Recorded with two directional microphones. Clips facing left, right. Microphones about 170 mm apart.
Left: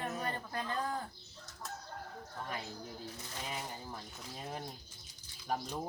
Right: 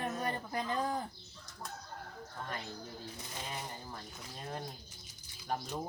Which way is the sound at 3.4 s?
5° left (ahead or behind).